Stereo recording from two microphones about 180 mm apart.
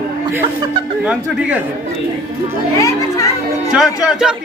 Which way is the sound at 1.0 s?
10° right (ahead or behind).